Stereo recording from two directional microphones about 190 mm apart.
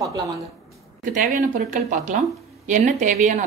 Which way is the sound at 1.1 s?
45° right (ahead or behind).